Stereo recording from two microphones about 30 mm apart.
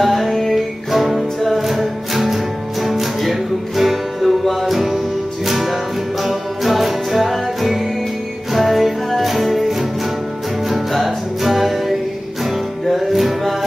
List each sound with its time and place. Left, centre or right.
0.0 s music: centre
10.9 s music: centre
12.9 s music: centre